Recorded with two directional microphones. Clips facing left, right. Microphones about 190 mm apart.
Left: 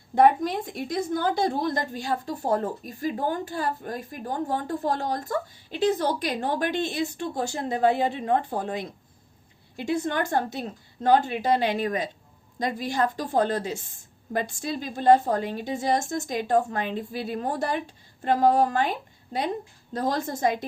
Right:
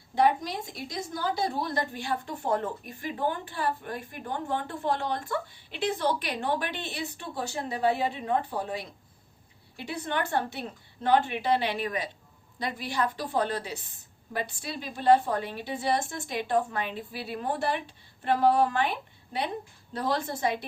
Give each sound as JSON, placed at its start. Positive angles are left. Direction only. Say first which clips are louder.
{"t": 0.2, "sound": "a woman's voice", "louder": "left 5 dB", "side_deg": 55}
{"t": 9.8, "sound": "a woman's voice", "louder": "left 6 dB", "side_deg": 45}